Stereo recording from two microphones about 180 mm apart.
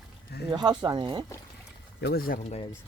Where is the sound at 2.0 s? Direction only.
60° left (ahead or behind).